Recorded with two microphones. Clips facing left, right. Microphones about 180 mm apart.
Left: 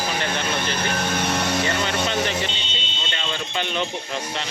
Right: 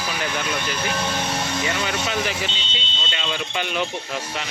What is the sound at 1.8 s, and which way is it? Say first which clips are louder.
Speech: left 1 dB; 5° right (ahead or behind).